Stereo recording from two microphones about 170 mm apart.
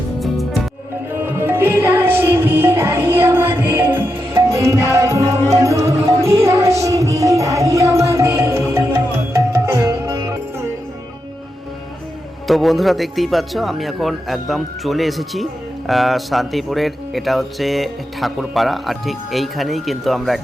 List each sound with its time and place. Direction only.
1.1 s music: 15° right (ahead or behind)
12.5 s speech: centre (ahead or behind)